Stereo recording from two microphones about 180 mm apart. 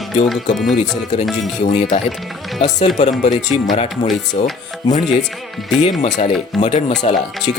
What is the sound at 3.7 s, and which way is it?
Speech, 40° left (ahead or behind).